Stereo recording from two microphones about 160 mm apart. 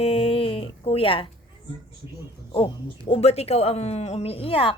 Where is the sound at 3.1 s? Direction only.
40° left (ahead or behind).